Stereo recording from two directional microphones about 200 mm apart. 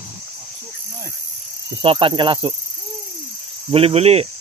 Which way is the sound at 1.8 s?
25° right (ahead or behind).